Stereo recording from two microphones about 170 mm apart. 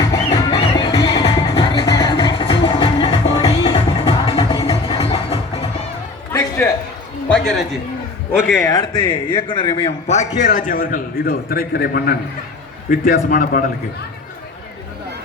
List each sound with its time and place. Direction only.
0.3 s music: 35° left (ahead or behind)
6.3 s music: 15° left (ahead or behind)
7.3 s a sound: 5° left (ahead or behind)
8.6 s speech: 25° left (ahead or behind)
10.1 s a man's voice: 45° left (ahead or behind)